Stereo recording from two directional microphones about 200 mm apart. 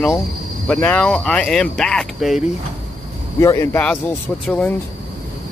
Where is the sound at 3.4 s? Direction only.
15° left (ahead or behind).